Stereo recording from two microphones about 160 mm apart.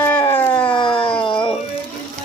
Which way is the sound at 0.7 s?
30° left (ahead or behind).